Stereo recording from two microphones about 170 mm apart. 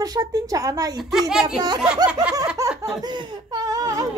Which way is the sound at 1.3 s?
5° right (ahead or behind).